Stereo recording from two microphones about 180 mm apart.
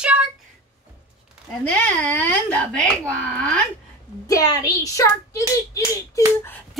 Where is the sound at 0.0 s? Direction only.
5° right (ahead or behind).